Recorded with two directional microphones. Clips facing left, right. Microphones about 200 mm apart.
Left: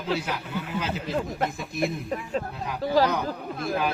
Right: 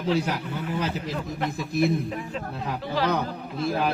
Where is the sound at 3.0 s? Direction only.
40° left (ahead or behind).